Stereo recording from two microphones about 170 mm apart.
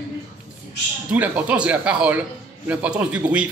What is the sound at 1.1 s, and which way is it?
Speech, 10° right (ahead or behind).